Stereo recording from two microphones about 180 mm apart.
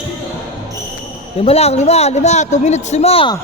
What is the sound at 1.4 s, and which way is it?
A man's voice, 35° left (ahead or behind).